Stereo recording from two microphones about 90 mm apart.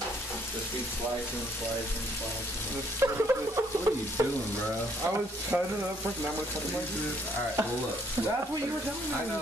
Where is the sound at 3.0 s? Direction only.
30° right (ahead or behind).